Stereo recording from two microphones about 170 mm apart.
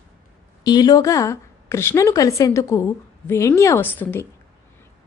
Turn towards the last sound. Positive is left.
turn(degrees=10)  # may be behind; listen again after turning